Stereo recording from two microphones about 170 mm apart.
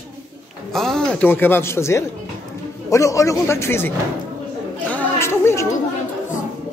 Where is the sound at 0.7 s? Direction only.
5° left (ahead or behind).